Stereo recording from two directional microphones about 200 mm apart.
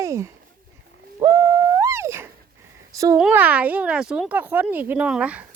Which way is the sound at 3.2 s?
5° right (ahead or behind).